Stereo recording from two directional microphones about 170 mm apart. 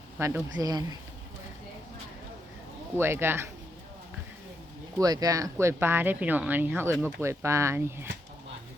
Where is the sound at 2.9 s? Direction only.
15° right (ahead or behind).